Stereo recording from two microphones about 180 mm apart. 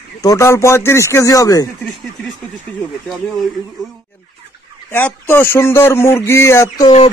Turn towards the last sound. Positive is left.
turn(degrees=15)  # may be behind; listen again after turning